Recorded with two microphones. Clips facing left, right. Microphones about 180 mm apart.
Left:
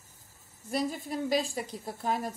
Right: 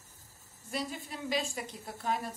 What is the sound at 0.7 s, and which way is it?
A woman's voice, 40° left (ahead or behind).